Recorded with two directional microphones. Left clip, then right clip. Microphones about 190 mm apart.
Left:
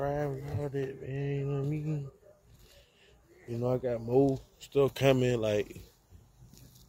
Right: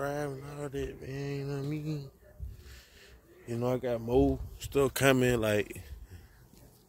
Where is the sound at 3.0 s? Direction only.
45° right (ahead or behind).